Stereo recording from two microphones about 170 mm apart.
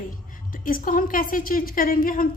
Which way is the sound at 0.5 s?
55° left (ahead or behind).